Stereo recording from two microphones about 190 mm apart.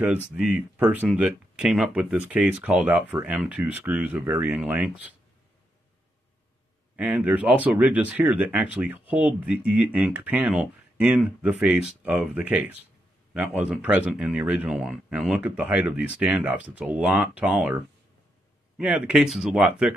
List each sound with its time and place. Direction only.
0.0 s speech: 5° right (ahead or behind)
7.0 s speech: 5° right (ahead or behind)